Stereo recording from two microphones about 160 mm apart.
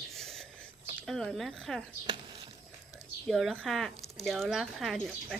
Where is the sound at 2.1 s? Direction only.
30° right (ahead or behind).